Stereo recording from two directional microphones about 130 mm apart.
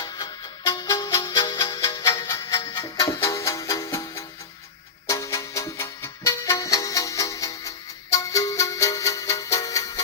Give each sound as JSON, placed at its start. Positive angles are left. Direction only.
{"t": 0.0, "sound": "music", "side_deg": 30}